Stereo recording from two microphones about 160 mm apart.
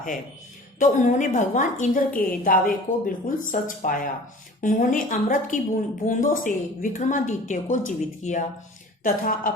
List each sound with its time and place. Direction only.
0.8 s a woman's voice: 55° left (ahead or behind)
9.0 s a woman's voice: 60° left (ahead or behind)